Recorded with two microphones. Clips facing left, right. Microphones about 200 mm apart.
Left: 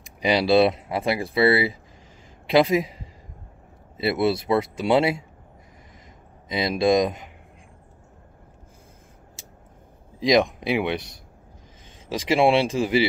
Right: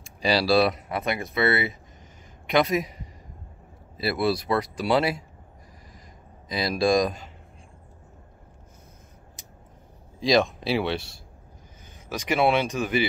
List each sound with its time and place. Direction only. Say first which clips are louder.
0.0 s speech: left 2 dB; 20° left (ahead or behind)
6.5 s speech: left 2 dB; 20° left (ahead or behind)
9.4 s a sound: left 2 dB; 25° left (ahead or behind)
10.2 s speech: left 2 dB; 20° left (ahead or behind)
12.1 s speech: left 3 dB; 30° left (ahead or behind)